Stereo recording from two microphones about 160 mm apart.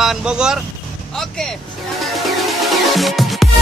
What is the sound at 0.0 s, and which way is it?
Speech, 5° right (ahead or behind).